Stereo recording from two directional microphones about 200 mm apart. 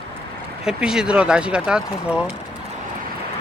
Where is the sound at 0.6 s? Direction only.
5° right (ahead or behind).